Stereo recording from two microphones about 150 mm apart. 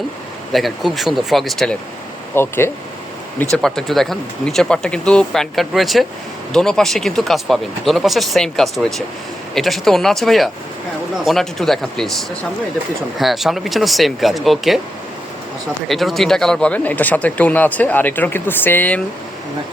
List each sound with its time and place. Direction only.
0.5 s speech: centre (ahead or behind)
2.3 s speech: 15° left (ahead or behind)
3.5 s speech: 5° left (ahead or behind)
13.1 s speech: centre (ahead or behind)
15.9 s speech: centre (ahead or behind)